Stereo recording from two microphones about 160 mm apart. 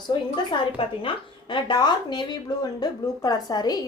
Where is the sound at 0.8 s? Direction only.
30° left (ahead or behind).